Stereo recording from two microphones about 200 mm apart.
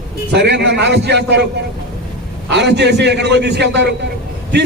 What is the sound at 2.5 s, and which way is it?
A man's voice, 60° right (ahead or behind).